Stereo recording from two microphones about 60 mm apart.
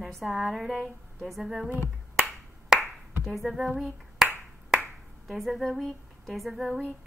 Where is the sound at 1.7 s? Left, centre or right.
Right.